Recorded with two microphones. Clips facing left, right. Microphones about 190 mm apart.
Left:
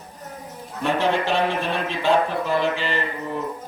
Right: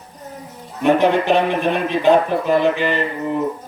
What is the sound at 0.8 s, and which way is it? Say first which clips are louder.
Speech: right 7 dB; 15° right (ahead or behind).